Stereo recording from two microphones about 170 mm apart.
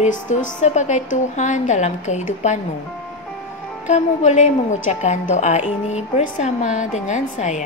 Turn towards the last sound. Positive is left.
turn(degrees=45)  # may be behind; listen again after turning